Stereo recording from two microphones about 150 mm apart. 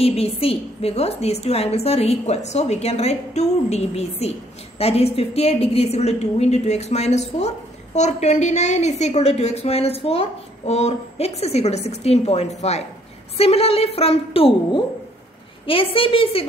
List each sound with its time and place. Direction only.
0.0 s a woman's voice: 40° left (ahead or behind)